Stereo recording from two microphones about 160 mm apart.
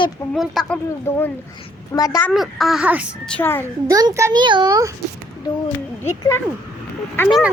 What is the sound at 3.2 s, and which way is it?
Speech, 10° left (ahead or behind).